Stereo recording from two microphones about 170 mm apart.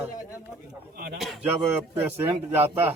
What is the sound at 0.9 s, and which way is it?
Speech, 60° right (ahead or behind).